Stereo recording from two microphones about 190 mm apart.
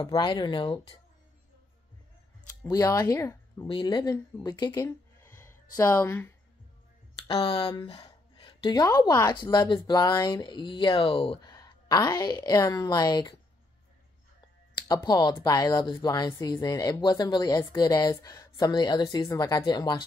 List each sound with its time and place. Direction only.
0.0 s speech: 25° left (ahead or behind)
2.6 s speech: 15° left (ahead or behind)
7.2 s speech: 30° left (ahead or behind)
15.0 s speech: 20° left (ahead or behind)